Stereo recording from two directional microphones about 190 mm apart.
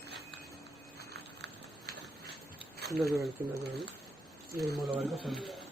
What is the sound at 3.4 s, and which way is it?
Speech, 10° right (ahead or behind).